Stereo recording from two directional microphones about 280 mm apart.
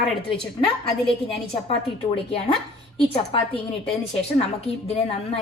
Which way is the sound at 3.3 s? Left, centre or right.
Centre.